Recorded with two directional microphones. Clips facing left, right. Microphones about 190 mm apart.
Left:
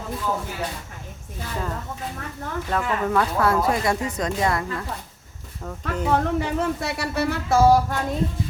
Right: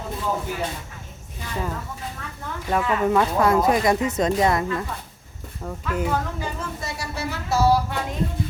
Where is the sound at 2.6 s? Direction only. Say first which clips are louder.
Right 4 dB; 15° right (ahead or behind).